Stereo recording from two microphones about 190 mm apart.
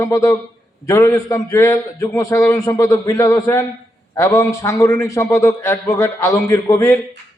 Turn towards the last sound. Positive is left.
turn(degrees=15)  # may be behind; listen again after turning